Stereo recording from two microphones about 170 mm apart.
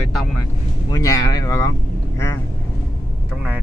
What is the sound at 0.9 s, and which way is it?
Speech, 20° left (ahead or behind).